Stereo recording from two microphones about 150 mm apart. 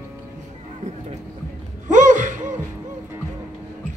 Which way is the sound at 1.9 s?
55° right (ahead or behind).